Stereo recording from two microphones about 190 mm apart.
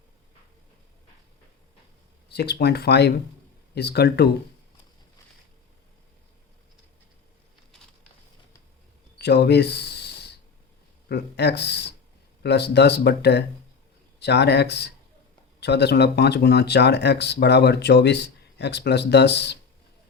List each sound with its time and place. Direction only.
2.3 s speech: 60° left (ahead or behind)
9.1 s a sound: 60° left (ahead or behind)
11.1 s speech: 60° left (ahead or behind)